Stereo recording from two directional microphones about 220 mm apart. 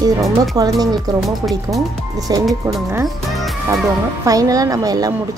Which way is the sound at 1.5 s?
Centre (ahead or behind).